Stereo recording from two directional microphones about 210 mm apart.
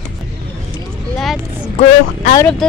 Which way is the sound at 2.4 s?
5° left (ahead or behind).